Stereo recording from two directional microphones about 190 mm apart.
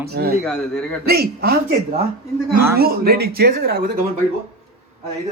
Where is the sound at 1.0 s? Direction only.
55° right (ahead or behind).